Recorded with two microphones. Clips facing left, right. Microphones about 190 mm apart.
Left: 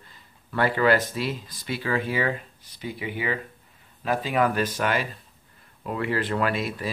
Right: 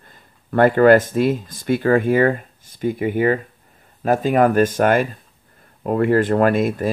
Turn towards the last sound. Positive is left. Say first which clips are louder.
# right 10 dB
turn(degrees=-50)  # may be behind; listen again after turning